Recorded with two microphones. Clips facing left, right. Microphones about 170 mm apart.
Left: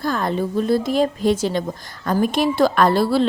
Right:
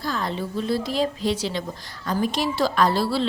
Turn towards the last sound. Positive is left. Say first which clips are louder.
# left 5 dB
turn(degrees=50)  # may be behind; listen again after turning